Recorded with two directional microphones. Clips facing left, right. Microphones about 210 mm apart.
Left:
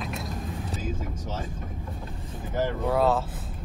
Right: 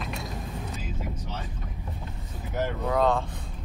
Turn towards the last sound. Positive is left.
turn(degrees=5)  # may be behind; listen again after turning